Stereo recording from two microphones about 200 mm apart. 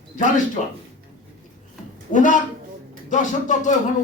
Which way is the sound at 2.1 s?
40° left (ahead or behind).